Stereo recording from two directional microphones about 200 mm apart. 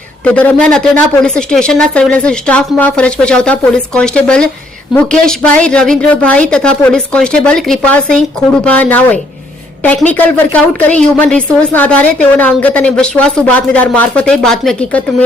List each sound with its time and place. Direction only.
0.3 s speech: 5° left (ahead or behind)
10.1 s speech: 10° left (ahead or behind)